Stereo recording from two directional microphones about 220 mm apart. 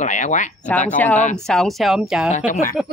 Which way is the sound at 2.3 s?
35° left (ahead or behind).